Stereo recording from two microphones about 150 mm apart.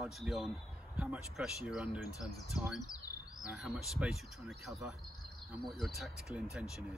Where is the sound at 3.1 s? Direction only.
90° left.